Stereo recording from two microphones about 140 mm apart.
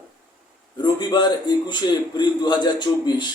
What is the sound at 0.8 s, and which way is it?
A man's voice, 30° left (ahead or behind).